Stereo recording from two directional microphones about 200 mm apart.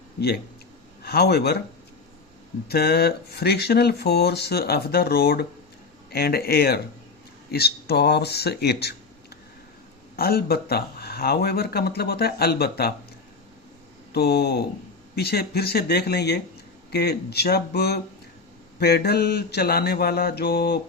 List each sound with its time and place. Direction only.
1.0 s speech: 55° left (ahead or behind)
2.6 s speech: 55° left (ahead or behind)
10.2 s speech: 50° left (ahead or behind)
14.1 s speech: 55° left (ahead or behind)